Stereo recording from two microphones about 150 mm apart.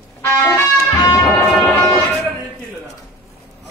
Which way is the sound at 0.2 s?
15° left (ahead or behind).